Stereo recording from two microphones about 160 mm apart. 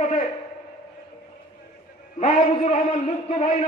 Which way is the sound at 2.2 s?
45° left (ahead or behind).